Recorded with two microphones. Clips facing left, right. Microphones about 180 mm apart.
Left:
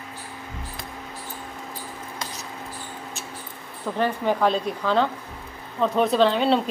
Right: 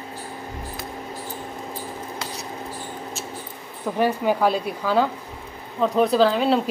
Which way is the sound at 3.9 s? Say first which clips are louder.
Right 2 dB; 10° right (ahead or behind).